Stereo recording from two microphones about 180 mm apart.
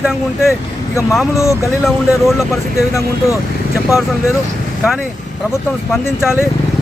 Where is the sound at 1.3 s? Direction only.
15° left (ahead or behind).